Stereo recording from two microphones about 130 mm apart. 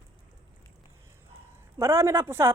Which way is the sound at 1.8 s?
20° right (ahead or behind).